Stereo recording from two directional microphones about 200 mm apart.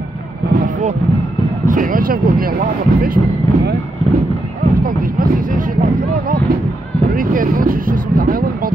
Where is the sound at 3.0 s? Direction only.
45° right (ahead or behind).